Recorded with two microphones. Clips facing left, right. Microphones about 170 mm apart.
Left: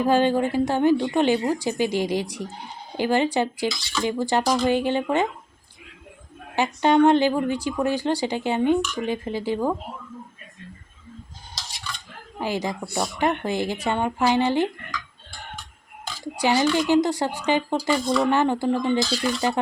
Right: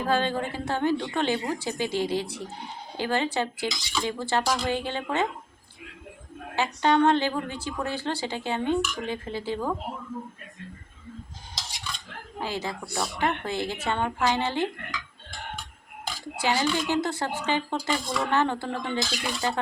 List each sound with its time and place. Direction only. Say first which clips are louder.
0.0 s a woman's voice: left 6 dB; 15° left (ahead or behind)
3.7 s speech: left 3 dB; 15° right (ahead or behind)
4.0 s a woman's voice: left 5 dB; 15° left (ahead or behind)
6.6 s a woman's voice: left 4 dB; 15° left (ahead or behind)
12.4 s a woman's voice: left 5 dB; 15° left (ahead or behind)
16.2 s a woman's voice: left 5 dB; 15° left (ahead or behind)